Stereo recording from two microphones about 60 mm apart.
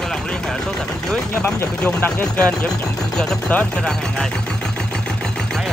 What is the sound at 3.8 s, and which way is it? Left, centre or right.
Speech, centre.